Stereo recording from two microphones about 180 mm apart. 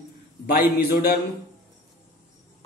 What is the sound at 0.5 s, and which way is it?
Speech, 55° left (ahead or behind).